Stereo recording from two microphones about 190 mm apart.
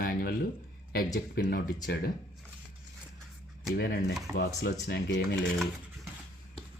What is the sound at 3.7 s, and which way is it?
Speech, 60° left (ahead or behind).